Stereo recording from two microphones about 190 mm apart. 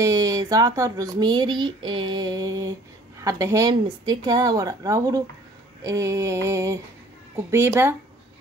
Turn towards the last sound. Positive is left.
turn(degrees=-10)  # may be behind; listen again after turning